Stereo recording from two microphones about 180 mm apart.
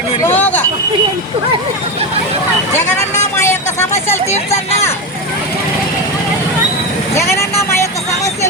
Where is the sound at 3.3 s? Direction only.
15° left (ahead or behind).